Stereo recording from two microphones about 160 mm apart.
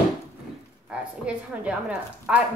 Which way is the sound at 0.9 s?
5° right (ahead or behind).